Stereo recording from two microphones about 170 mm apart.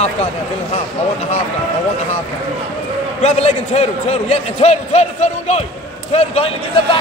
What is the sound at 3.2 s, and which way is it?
A man's voice, 40° left (ahead or behind).